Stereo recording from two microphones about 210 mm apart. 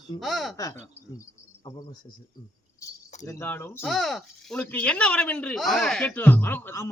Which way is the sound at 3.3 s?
10° left (ahead or behind).